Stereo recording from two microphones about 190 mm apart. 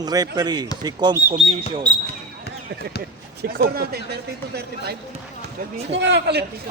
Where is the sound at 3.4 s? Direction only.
55° right (ahead or behind).